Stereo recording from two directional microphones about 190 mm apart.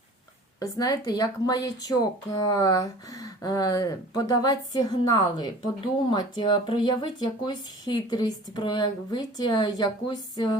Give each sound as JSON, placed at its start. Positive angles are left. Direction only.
{"t": 0.6, "sound": "speech", "side_deg": 20}